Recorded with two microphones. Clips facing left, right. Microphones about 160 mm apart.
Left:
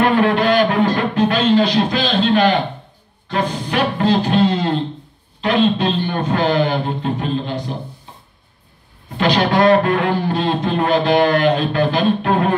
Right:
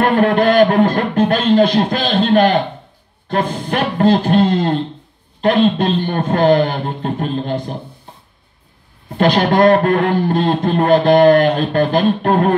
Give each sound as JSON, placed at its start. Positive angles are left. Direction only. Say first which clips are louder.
{"t": 0.0, "sound": "a sound", "louder": "right 2 dB", "side_deg": -50}
{"t": 3.3, "sound": "a man's voice", "louder": "right 2 dB", "side_deg": -50}
{"t": 9.1, "sound": "a man's voice", "louder": "right 3 dB", "side_deg": -50}